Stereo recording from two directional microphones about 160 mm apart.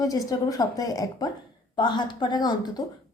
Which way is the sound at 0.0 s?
20° left (ahead or behind).